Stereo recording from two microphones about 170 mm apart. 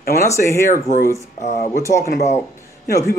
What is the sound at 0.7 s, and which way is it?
Speech, 55° left (ahead or behind).